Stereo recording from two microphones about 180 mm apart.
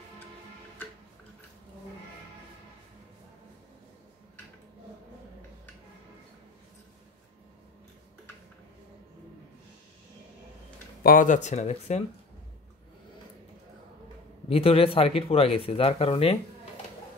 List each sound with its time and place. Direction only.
11.0 s speech: 50° left (ahead or behind)
14.5 s speech: 30° left (ahead or behind)